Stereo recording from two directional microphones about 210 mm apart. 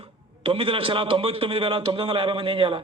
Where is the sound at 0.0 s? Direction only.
25° right (ahead or behind).